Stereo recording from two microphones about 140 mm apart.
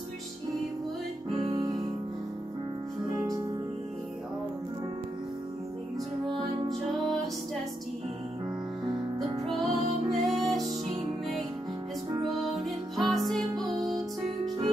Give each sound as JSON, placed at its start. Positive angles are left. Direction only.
{"t": 1.5, "sound": "music", "side_deg": -30}
{"t": 9.5, "sound": "music", "side_deg": 0}
{"t": 12.4, "sound": "music", "side_deg": 0}